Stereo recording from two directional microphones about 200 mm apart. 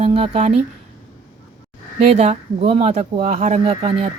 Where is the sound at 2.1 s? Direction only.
30° right (ahead or behind).